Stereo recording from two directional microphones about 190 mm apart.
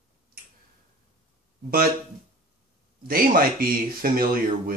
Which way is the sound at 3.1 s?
50° right (ahead or behind).